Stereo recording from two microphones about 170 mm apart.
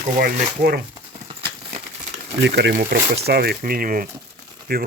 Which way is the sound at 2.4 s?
85° right.